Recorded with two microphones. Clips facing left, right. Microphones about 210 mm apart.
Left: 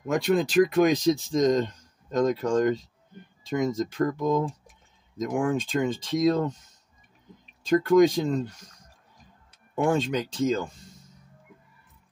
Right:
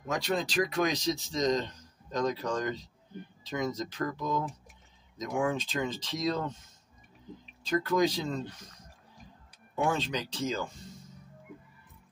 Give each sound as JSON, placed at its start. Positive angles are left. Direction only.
{"t": 0.1, "sound": "speech", "side_deg": 55}
{"t": 8.0, "sound": "speech", "side_deg": 50}
{"t": 9.8, "sound": "speech", "side_deg": 50}